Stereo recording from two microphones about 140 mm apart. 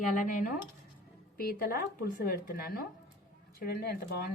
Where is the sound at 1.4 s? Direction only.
90° left.